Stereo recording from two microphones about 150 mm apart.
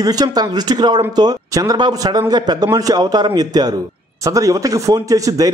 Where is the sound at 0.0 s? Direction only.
25° right (ahead or behind).